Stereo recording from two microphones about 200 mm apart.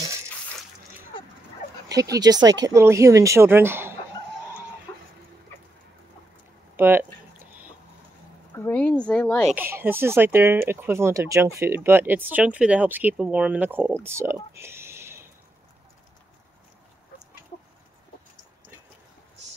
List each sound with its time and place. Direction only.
1.9 s speech: 15° right (ahead or behind)
6.8 s speech: 10° right (ahead or behind)
8.5 s speech: 10° left (ahead or behind)
9.5 s speech: 10° right (ahead or behind)
14.0 s a sound: 15° right (ahead or behind)